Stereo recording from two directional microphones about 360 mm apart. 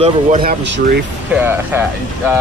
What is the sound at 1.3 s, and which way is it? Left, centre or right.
Speech, centre.